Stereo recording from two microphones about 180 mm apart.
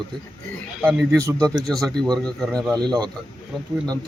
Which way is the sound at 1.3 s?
5° left (ahead or behind).